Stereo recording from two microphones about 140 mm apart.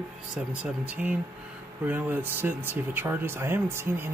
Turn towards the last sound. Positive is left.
turn(degrees=-15)  # may be behind; listen again after turning